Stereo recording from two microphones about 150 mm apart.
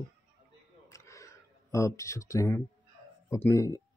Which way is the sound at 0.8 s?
20° left (ahead or behind).